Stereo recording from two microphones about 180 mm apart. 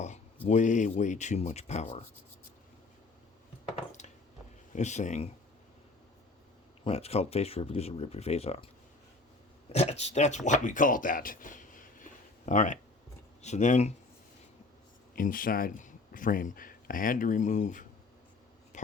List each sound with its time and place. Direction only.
0.4 s speech: 40° left (ahead or behind)
4.7 s speech: 40° left (ahead or behind)
6.8 s speech: 35° left (ahead or behind)
9.7 s speech: 35° left (ahead or behind)
15.1 s speech: 50° left (ahead or behind)